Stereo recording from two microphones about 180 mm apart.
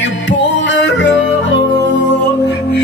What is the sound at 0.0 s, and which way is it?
Music, 85° left.